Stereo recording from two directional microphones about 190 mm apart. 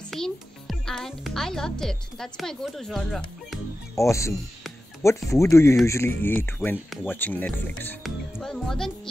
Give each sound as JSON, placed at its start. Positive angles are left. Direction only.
{"t": 0.1, "sound": "a child's voice", "side_deg": 0}
{"t": 3.9, "sound": "speech", "side_deg": 15}
{"t": 5.3, "sound": "speech", "side_deg": 15}